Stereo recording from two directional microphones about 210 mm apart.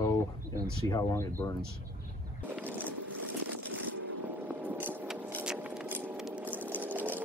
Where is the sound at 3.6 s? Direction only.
85° right.